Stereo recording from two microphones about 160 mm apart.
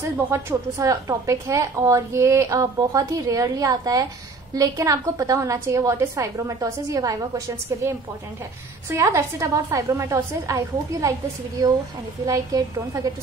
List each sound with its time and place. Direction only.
0.3 s a woman's voice: 20° right (ahead or behind)
8.9 s a woman's voice: 15° right (ahead or behind)
12.3 s a woman's voice: 20° right (ahead or behind)